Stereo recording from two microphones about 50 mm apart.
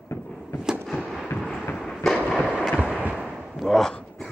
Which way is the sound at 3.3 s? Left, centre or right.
Centre.